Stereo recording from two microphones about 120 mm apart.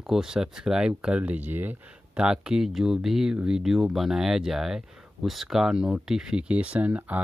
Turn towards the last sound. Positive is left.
turn(degrees=-10)  # may be behind; listen again after turning